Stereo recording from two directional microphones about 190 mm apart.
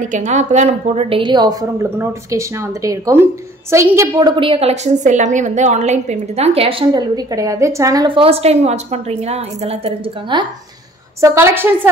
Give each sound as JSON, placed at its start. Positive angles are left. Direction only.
{"t": 0.0, "sound": "a woman's voice", "side_deg": -40}
{"t": 11.1, "sound": "a woman's voice", "side_deg": -15}